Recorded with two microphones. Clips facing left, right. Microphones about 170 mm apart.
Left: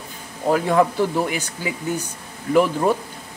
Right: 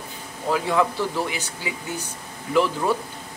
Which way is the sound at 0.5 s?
45° left (ahead or behind).